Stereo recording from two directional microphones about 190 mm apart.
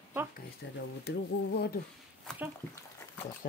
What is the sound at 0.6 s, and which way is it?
Speech, 70° left (ahead or behind).